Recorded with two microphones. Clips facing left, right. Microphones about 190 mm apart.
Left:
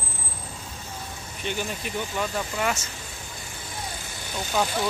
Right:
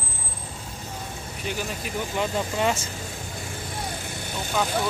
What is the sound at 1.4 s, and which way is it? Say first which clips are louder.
Speech: left 1 dB; centre (ahead or behind).